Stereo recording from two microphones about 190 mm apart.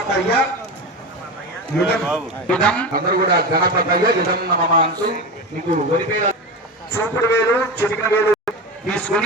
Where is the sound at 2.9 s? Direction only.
50° right (ahead or behind).